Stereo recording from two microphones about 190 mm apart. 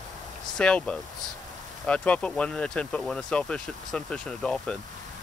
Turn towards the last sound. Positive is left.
turn(degrees=5)  # may be behind; listen again after turning